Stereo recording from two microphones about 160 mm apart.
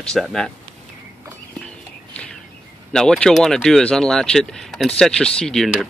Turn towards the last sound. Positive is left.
turn(degrees=5)  # may be behind; listen again after turning